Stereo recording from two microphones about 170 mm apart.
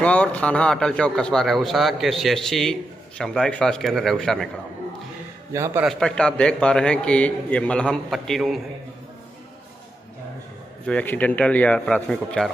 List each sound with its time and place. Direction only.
0.0 s a man's voice: 10° left (ahead or behind)
5.5 s a man's voice: 15° right (ahead or behind)
5.9 s a man's voice: 5° left (ahead or behind)
10.9 s speech: 10° left (ahead or behind)